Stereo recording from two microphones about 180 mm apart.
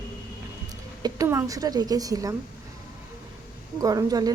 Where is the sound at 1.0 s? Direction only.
20° right (ahead or behind).